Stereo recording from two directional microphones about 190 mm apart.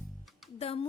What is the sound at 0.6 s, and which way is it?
Speech, 30° left (ahead or behind).